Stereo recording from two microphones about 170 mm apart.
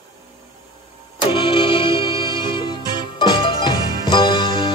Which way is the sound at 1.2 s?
30° left (ahead or behind).